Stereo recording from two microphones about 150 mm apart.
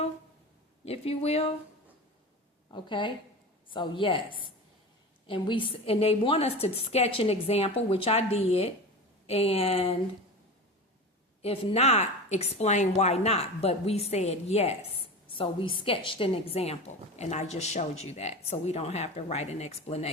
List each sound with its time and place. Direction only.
0.9 s a woman's voice: 40° left (ahead or behind)
2.6 s a woman's voice: 30° left (ahead or behind)
11.4 s a woman's voice: 45° left (ahead or behind)